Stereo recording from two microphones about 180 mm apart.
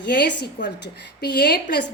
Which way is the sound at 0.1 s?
60° left (ahead or behind).